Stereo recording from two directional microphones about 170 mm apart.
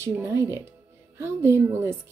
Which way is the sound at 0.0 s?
15° right (ahead or behind).